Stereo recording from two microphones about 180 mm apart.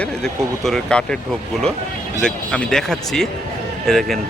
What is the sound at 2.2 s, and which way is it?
Speech, 5° left (ahead or behind).